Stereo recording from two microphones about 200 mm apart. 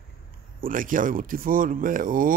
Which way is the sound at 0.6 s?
45° right (ahead or behind).